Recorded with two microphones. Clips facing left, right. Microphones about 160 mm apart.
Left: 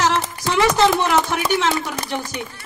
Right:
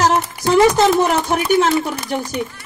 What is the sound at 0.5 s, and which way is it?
A woman's voice, 40° right (ahead or behind).